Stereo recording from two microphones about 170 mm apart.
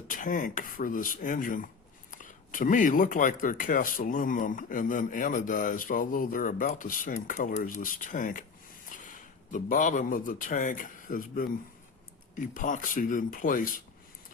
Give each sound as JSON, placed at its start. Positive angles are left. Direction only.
{"t": 0.1, "sound": "a man's voice", "side_deg": 55}